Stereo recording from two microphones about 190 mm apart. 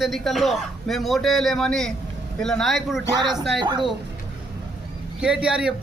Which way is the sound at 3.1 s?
20° right (ahead or behind).